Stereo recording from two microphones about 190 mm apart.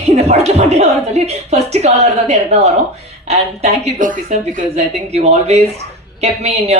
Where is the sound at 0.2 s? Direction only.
35° right (ahead or behind).